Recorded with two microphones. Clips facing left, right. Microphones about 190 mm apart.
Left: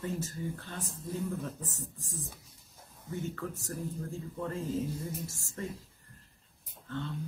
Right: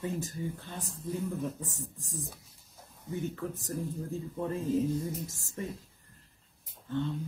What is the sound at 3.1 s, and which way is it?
Speech, 15° right (ahead or behind).